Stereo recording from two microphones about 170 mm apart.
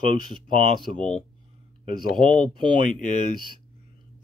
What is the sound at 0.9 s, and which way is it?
Speech, 5° left (ahead or behind).